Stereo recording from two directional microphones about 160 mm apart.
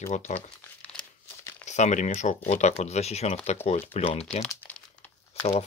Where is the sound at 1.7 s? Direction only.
50° left (ahead or behind).